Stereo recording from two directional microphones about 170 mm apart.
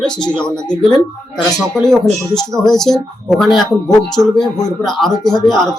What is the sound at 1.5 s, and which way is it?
Speech, 5° left (ahead or behind).